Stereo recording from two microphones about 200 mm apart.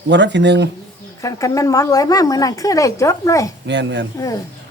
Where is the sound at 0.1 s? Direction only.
60° right (ahead or behind).